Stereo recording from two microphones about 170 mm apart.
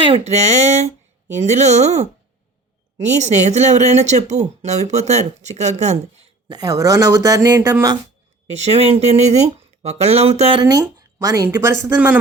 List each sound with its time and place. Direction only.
0.0 s speech: 35° right (ahead or behind)
6.5 s speech: 20° right (ahead or behind)
8.5 s speech: 40° right (ahead or behind)
10.6 s speech: 20° right (ahead or behind)